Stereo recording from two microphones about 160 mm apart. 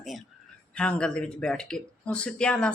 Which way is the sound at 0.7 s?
5° left (ahead or behind).